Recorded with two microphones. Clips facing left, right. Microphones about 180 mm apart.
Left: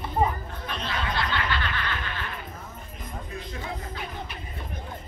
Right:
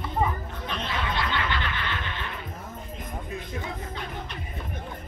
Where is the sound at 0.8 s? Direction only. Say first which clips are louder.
Left 1 dB; 25° right (ahead or behind).